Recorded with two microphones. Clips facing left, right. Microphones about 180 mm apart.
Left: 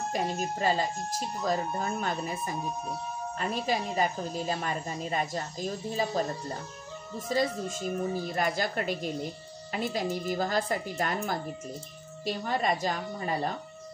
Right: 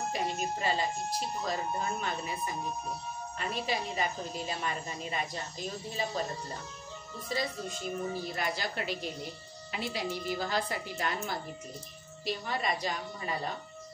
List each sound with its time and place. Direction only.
0.1 s a woman's voice: 40° left (ahead or behind)
3.3 s a woman's voice: 40° left (ahead or behind)
7.2 s a woman's voice: 45° left (ahead or behind)